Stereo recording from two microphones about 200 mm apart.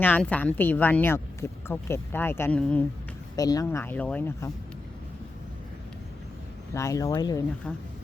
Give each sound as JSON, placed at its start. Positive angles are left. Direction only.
{"t": 0.0, "sound": "speech", "side_deg": 10}
{"t": 3.3, "sound": "speech", "side_deg": 20}
{"t": 6.7, "sound": "speech", "side_deg": 15}